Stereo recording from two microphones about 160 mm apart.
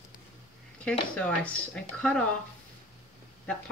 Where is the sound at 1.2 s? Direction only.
10° left (ahead or behind).